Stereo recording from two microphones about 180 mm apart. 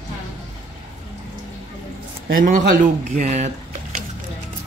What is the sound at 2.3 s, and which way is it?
Speech, 50° right (ahead or behind).